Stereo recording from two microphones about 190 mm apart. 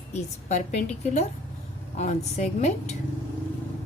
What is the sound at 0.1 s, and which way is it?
A woman's voice, 35° left (ahead or behind).